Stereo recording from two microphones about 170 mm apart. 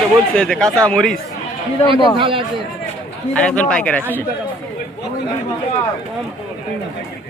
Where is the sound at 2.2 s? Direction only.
30° right (ahead or behind).